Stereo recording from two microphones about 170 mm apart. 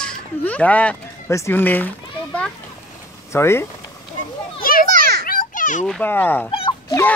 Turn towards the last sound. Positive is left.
turn(degrees=25)  # may be behind; listen again after turning